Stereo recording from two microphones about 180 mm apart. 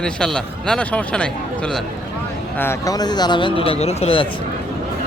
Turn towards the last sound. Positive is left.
turn(degrees=30)  # may be behind; listen again after turning